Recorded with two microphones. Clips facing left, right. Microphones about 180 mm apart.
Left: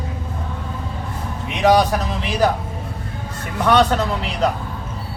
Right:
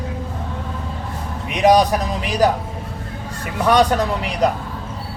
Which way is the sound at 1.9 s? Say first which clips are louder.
Right 1 dB; 15° right (ahead or behind).